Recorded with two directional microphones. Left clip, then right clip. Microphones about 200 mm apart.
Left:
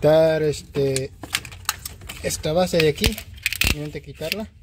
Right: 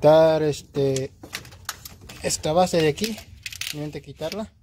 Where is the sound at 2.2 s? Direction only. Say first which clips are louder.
Right 1 dB; 5° right (ahead or behind).